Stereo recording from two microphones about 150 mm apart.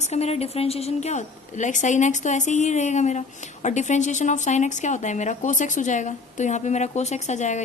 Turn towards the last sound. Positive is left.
turn(degrees=50)  # may be behind; listen again after turning